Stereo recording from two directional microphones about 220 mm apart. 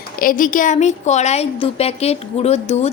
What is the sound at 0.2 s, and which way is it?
A woman's voice, 40° left (ahead or behind).